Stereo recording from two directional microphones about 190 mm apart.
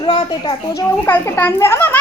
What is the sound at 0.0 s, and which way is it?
Speech, 30° left (ahead or behind).